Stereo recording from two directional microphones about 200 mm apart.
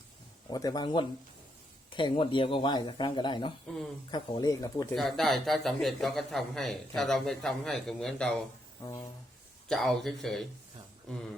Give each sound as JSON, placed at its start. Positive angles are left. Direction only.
{"t": 0.5, "sound": "speech", "side_deg": 20}
{"t": 4.9, "sound": "speech", "side_deg": 0}
{"t": 8.8, "sound": "speech", "side_deg": 20}
{"t": 9.6, "sound": "speech", "side_deg": 0}